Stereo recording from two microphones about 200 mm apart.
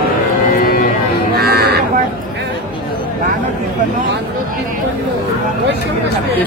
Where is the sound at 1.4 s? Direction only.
50° right (ahead or behind).